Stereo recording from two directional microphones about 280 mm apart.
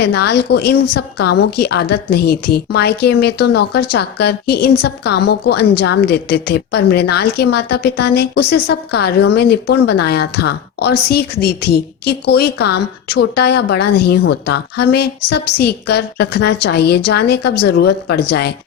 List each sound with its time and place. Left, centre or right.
0.0 s a woman's voice: left